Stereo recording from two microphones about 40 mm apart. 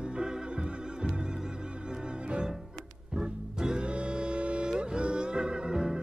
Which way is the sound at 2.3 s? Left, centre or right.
Right.